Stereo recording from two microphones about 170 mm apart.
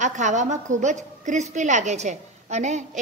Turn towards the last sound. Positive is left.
turn(degrees=-45)  # may be behind; listen again after turning